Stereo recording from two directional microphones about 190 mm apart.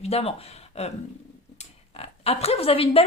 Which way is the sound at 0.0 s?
30° left (ahead or behind).